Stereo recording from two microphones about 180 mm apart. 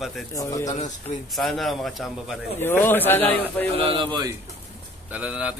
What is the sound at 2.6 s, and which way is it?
Speech, 10° left (ahead or behind).